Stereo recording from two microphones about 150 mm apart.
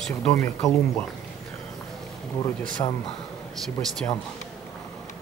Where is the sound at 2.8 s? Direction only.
35° left (ahead or behind).